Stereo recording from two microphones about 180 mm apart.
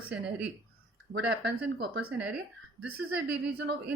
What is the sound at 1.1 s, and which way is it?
Speech, 65° right (ahead or behind).